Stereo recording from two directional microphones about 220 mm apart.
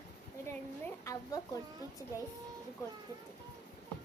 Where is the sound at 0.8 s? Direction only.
15° left (ahead or behind).